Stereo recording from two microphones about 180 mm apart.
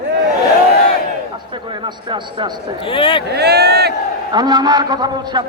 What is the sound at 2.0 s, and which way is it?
Speech, 25° right (ahead or behind).